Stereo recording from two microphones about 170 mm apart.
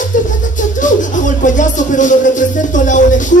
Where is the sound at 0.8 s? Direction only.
50° left (ahead or behind).